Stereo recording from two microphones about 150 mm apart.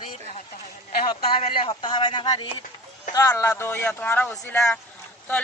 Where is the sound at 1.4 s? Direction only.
35° left (ahead or behind).